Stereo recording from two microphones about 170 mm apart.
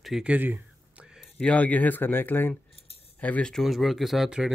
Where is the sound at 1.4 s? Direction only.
10° left (ahead or behind).